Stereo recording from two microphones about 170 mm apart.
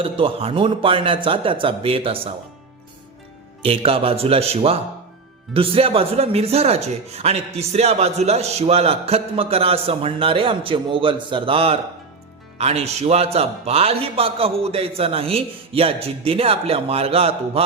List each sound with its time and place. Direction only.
0.0 s speech: 30° right (ahead or behind)
3.6 s speech: 35° right (ahead or behind)